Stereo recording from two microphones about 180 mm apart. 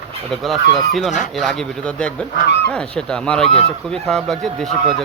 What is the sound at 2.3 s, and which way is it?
Speech, 65° left (ahead or behind).